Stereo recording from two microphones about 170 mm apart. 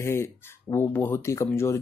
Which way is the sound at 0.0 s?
15° left (ahead or behind).